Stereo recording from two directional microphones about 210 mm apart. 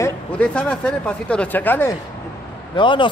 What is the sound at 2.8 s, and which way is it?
Speech, 25° left (ahead or behind).